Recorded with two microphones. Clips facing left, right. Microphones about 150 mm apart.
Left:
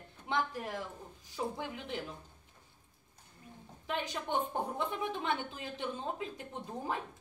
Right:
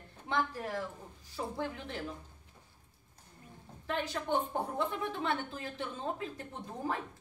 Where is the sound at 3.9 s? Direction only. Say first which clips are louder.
Right 2 dB; 15° left (ahead or behind).